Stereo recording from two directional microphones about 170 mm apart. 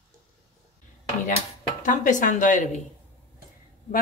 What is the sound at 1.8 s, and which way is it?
A woman's voice, 50° left (ahead or behind).